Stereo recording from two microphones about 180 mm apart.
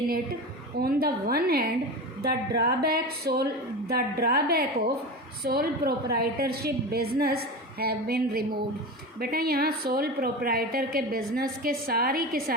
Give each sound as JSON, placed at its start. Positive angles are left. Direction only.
{"t": 0.8, "sound": "a woman's voice", "side_deg": -55}